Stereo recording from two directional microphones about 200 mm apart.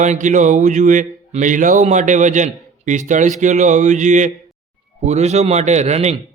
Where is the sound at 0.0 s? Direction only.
35° right (ahead or behind).